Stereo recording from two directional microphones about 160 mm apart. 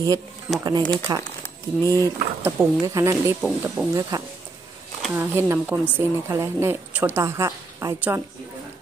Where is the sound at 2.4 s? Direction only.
20° right (ahead or behind).